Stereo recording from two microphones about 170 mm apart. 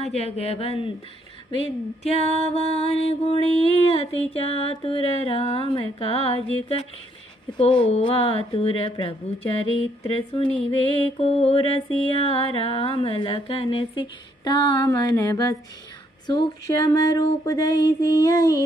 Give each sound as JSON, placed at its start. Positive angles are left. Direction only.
{"t": 0.0, "sound": "music", "side_deg": 40}
{"t": 2.0, "sound": "music", "side_deg": 40}
{"t": 7.5, "sound": "music", "side_deg": 30}
{"t": 10.1, "sound": "music", "side_deg": 35}
{"t": 16.3, "sound": "a sound", "side_deg": 20}